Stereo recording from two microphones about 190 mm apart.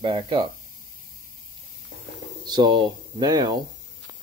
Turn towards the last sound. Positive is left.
turn(degrees=-20)  # may be behind; listen again after turning